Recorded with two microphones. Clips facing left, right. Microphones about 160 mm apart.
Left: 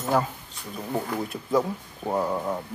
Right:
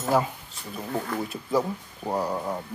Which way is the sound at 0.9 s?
15° left (ahead or behind).